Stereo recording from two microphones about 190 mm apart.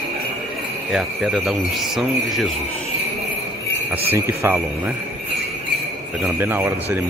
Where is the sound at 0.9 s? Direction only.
Centre (ahead or behind).